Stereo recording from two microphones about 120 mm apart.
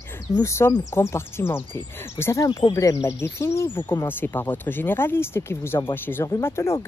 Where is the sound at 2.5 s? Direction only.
30° left (ahead or behind).